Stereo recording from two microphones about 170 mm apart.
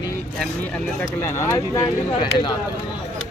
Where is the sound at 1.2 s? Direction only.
15° left (ahead or behind).